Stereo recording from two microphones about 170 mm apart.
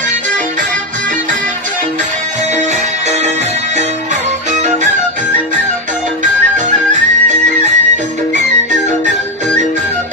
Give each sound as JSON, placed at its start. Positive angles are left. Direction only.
{"t": 6.2, "sound": "music", "side_deg": -45}